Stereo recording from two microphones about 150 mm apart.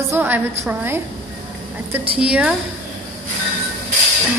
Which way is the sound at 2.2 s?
5° right (ahead or behind).